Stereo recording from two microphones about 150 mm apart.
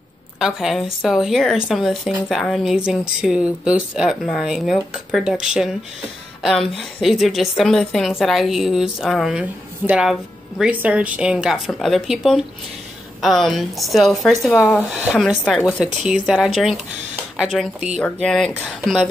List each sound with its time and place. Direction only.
0.4 s a woman's voice: 5° right (ahead or behind)
14.5 s speech: 15° left (ahead or behind)
14.8 s a woman's voice: 5° right (ahead or behind)